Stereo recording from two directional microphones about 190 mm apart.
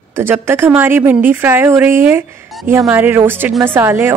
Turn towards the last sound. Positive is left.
turn(degrees=-10)  # may be behind; listen again after turning